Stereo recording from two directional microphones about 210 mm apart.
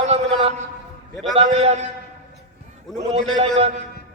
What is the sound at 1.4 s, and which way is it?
Speech, 30° right (ahead or behind).